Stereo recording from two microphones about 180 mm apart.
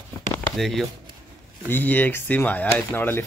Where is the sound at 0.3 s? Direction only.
10° left (ahead or behind).